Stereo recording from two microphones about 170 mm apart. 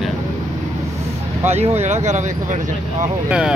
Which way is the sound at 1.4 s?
40° right (ahead or behind).